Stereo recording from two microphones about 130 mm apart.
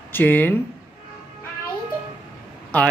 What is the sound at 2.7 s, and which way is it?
Speech, 10° left (ahead or behind).